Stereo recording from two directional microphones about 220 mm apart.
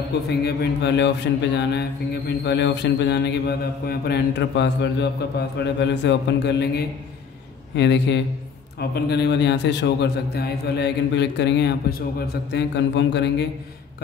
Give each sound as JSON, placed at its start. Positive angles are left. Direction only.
{"t": 0.3, "sound": "mantra", "side_deg": 45}